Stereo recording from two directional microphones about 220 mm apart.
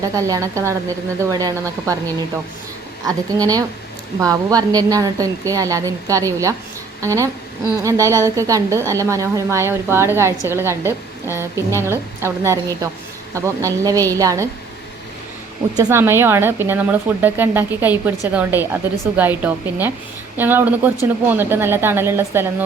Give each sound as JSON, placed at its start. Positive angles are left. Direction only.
{"t": 0.2, "sound": "speech", "side_deg": -15}
{"t": 15.8, "sound": "speech", "side_deg": -10}